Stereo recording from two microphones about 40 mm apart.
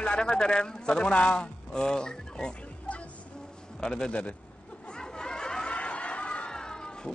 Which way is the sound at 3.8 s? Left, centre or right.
Centre.